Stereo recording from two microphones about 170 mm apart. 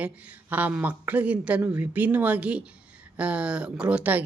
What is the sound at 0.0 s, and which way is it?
Speech, 10° right (ahead or behind).